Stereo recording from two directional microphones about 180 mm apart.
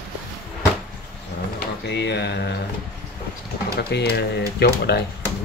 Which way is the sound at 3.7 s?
60° left (ahead or behind).